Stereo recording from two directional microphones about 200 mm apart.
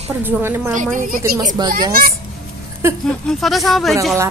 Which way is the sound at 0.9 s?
40° right (ahead or behind).